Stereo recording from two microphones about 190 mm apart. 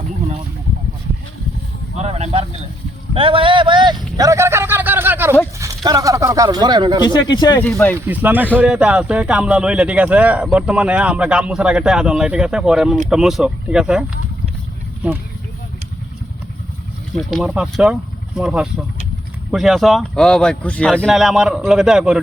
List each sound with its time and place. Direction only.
2.0 s a sound: 35° right (ahead or behind)
7.0 s speech: 25° left (ahead or behind)
7.6 s speech: 10° left (ahead or behind)
7.9 s speech: 10° right (ahead or behind)
17.2 s speech: 5° right (ahead or behind)